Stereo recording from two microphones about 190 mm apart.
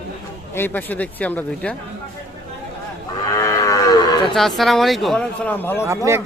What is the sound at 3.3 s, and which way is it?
Livestock, 15° left (ahead or behind).